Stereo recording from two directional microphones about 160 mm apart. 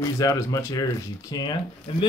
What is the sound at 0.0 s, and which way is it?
Speech, 20° left (ahead or behind).